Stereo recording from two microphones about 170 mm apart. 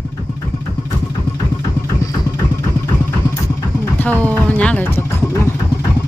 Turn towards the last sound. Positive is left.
turn(degrees=10)  # may be behind; listen again after turning